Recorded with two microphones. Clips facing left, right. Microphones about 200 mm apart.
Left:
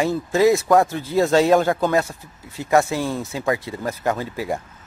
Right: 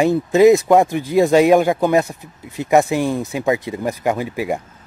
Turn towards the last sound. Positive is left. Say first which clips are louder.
# right 4 dB
turn(degrees=-15)  # may be behind; listen again after turning